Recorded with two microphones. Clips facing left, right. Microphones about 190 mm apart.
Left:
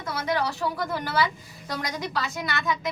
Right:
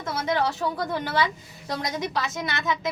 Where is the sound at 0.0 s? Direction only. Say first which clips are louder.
Right 2 dB; 25° right (ahead or behind).